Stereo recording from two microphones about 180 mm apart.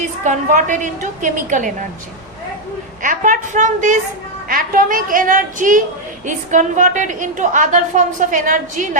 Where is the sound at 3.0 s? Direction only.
45° right (ahead or behind).